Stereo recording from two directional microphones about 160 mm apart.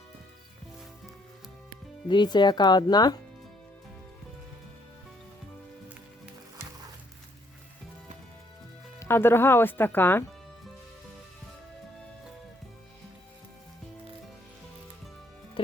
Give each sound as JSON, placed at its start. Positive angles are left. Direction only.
{"t": 2.0, "sound": "speech", "side_deg": 30}
{"t": 9.0, "sound": "speech", "side_deg": 15}
{"t": 15.6, "sound": "music", "side_deg": 35}